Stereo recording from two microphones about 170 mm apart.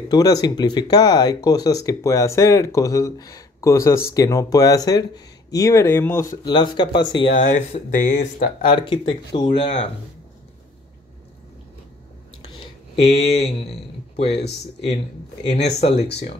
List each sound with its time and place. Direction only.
0.1 s speech: 20° left (ahead or behind); by 8.6 s 45° left (ahead or behind)
8.6 s speech: 30° left (ahead or behind)
12.9 s speech: 35° left (ahead or behind)
15.5 s speech: 40° left (ahead or behind)
16.0 s speech: 75° left (ahead or behind)